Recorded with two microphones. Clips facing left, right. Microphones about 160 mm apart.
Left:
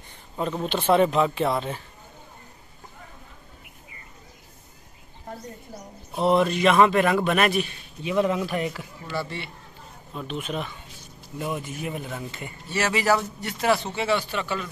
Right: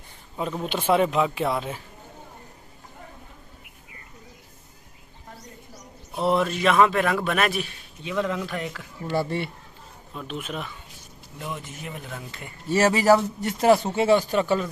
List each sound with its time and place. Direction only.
0.4 s a man's voice: 5° right (ahead or behind)
6.1 s a man's voice: centre (ahead or behind)
8.0 s speech: 10° left (ahead or behind)
9.1 s speech: 50° right (ahead or behind)
10.1 s a man's voice: centre (ahead or behind)
11.5 s speech: 10° left (ahead or behind)
12.6 s a man's voice: 40° right (ahead or behind)